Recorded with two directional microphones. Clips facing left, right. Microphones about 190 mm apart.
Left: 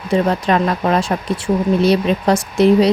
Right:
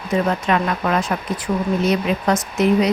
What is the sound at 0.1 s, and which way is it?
Speech, 35° left (ahead or behind).